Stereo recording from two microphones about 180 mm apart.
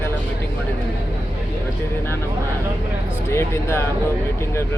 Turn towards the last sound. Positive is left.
turn(degrees=15)  # may be behind; listen again after turning